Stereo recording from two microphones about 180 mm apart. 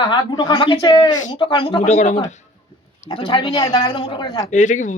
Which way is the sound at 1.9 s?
45° left (ahead or behind).